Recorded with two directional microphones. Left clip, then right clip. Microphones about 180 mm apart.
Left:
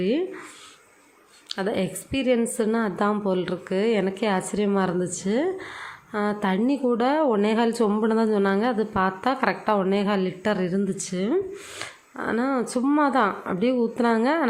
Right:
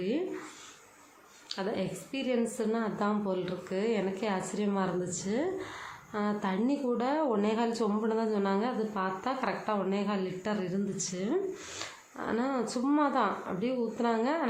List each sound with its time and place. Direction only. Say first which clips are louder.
0.0 s a woman's voice: left 8 dB; 30° left (ahead or behind)
1.5 s a woman's voice: left 7 dB; 30° left (ahead or behind)